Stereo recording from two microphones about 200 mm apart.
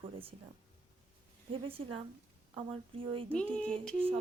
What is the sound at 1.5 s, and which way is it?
A woman's voice, 25° right (ahead or behind).